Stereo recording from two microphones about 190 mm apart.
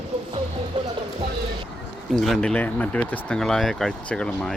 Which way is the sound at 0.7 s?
25° right (ahead or behind).